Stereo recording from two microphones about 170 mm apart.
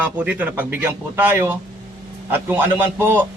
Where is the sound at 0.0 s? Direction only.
10° right (ahead or behind).